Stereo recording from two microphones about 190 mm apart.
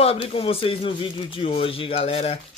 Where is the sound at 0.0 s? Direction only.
30° left (ahead or behind).